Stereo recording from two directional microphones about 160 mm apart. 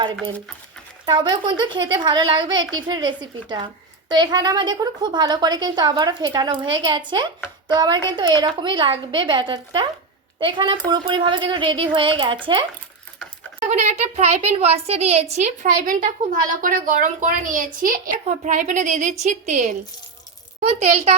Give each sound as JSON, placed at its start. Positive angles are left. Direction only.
{"t": 0.0, "sound": "a woman's voice", "side_deg": -30}
{"t": 13.7, "sound": "a woman's voice", "side_deg": -45}
{"t": 15.6, "sound": "a woman's voice", "side_deg": -55}